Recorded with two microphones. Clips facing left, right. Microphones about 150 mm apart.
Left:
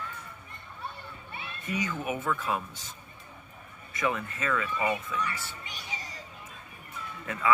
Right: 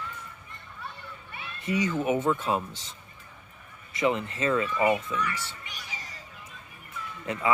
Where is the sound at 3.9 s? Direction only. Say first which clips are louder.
Right 4 dB; 25° right (ahead or behind).